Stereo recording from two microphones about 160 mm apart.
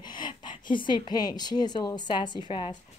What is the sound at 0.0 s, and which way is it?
A woman's voice, 30° left (ahead or behind).